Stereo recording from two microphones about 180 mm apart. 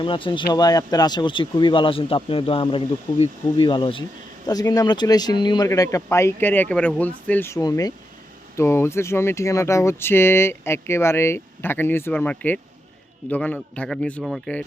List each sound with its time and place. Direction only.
0.0 s speech: 30° left (ahead or behind); by 14.6 s centre (ahead or behind)